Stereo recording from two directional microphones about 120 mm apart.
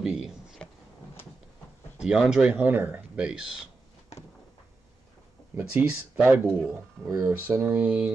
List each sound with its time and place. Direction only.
0.0 s speech: 5° right (ahead or behind)
2.0 s speech: 5° right (ahead or behind)
5.6 s speech: 15° right (ahead or behind)